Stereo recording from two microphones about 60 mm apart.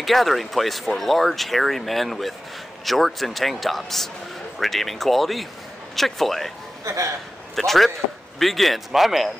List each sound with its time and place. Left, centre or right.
0.0 s speech: centre
6.8 s speech: right
7.5 s speech: centre